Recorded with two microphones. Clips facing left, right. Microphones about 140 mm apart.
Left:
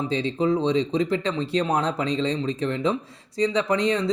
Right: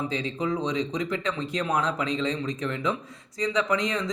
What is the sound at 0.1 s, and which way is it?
A man's voice, 30° left (ahead or behind).